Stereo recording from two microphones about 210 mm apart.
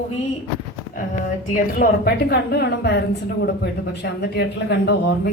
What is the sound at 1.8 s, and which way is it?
A woman's voice, 50° left (ahead or behind).